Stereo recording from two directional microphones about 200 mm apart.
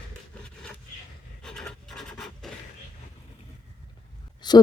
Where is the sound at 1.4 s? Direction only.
5° left (ahead or behind).